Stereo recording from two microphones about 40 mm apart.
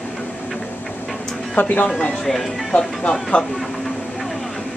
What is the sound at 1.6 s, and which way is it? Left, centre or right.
Speech, left.